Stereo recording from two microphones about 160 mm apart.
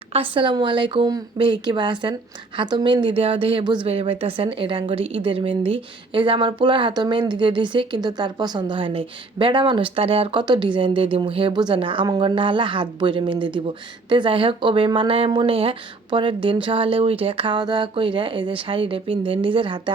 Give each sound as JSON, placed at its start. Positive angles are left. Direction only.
{"t": 0.1, "sound": "speech", "side_deg": -35}